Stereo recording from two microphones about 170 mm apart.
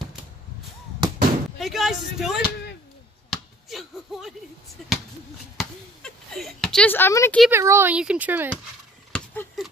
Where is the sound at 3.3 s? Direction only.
Centre (ahead or behind).